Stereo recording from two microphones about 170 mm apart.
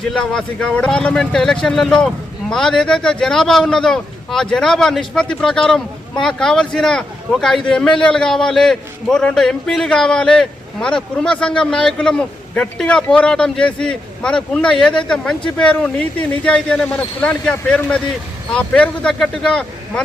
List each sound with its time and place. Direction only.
0.0 s a man's voice: 5° left (ahead or behind)